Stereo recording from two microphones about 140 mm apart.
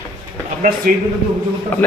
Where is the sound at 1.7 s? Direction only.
10° left (ahead or behind).